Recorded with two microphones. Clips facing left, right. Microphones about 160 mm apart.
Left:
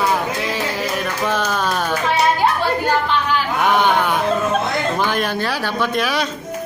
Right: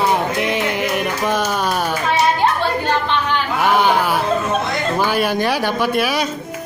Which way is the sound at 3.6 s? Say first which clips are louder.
Right 1 dB; 5° right (ahead or behind).